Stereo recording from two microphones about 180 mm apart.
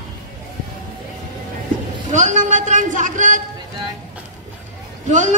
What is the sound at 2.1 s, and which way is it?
Speech, 40° right (ahead or behind).